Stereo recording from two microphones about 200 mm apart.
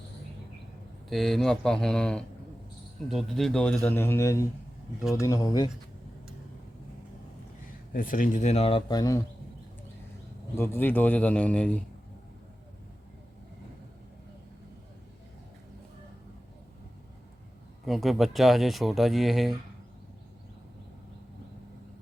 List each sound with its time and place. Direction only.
1.1 s a man's voice: centre (ahead or behind); by 5.7 s 20° left (ahead or behind)
7.9 s speech: 45° left (ahead or behind); by 9.2 s 20° left (ahead or behind)
10.5 s a man's voice: 10° left (ahead or behind)
17.8 s speech: centre (ahead or behind)